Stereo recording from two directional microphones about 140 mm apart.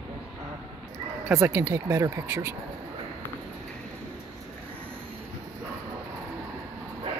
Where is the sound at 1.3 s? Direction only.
20° right (ahead or behind).